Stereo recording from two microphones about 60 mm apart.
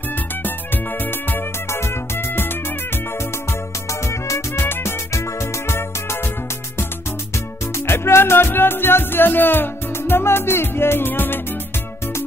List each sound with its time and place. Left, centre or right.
1.7 s music: left
4.6 s music: left
7.7 s music: left